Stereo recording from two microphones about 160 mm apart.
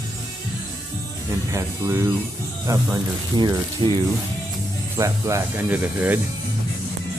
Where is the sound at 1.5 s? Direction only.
15° right (ahead or behind).